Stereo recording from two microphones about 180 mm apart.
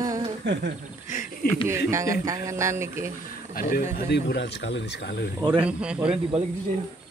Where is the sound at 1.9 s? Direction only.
15° right (ahead or behind).